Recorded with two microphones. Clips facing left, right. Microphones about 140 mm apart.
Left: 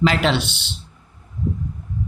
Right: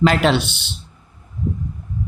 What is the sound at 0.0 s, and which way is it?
Speech, 45° right (ahead or behind).